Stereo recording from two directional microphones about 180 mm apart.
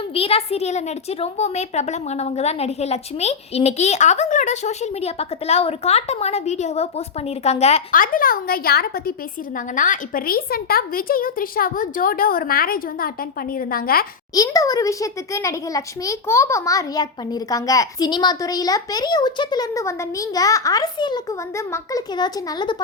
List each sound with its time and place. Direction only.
0.1 s a woman's voice: 30° left (ahead or behind)
7.9 s a woman's voice: 50° left (ahead or behind)
9.7 s a woman's voice: 45° left (ahead or behind)
14.3 s a child's voice: 20° left (ahead or behind)